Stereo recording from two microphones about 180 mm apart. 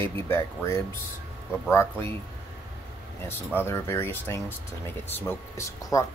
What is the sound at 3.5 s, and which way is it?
Speech, 15° left (ahead or behind).